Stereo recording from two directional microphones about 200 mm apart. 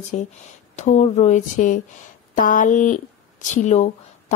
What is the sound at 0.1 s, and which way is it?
A woman's voice, 35° left (ahead or behind).